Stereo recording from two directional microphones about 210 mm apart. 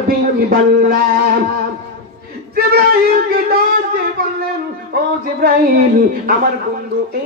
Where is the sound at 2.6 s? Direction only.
45° right (ahead or behind).